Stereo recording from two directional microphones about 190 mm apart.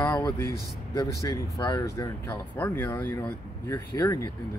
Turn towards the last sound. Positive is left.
turn(degrees=15)  # may be behind; listen again after turning